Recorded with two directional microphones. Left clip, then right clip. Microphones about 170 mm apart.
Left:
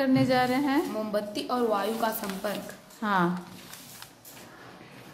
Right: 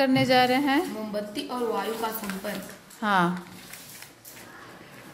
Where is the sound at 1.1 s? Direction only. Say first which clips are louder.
Left 2 dB; 30° left (ahead or behind).